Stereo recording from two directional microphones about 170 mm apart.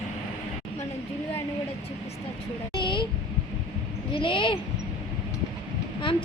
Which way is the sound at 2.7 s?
30° left (ahead or behind).